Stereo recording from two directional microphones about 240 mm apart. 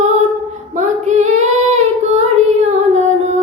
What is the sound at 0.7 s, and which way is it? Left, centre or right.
Singing, right.